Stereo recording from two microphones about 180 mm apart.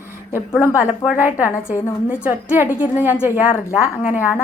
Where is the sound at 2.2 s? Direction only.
10° right (ahead or behind).